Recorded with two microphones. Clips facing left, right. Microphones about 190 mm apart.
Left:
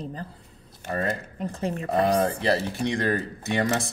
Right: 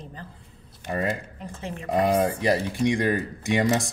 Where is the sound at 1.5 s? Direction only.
40° left (ahead or behind).